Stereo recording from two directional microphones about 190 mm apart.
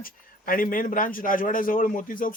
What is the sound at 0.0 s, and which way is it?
Speech, 50° left (ahead or behind).